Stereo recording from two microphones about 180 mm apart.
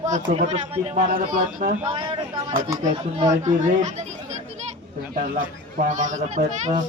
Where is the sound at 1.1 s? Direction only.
50° right (ahead or behind).